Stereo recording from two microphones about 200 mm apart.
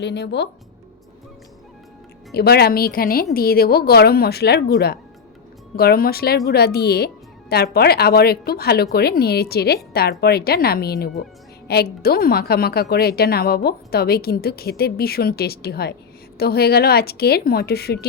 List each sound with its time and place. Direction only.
0.0 s speech: 60° left (ahead or behind)
2.3 s a woman's voice: 55° left (ahead or behind)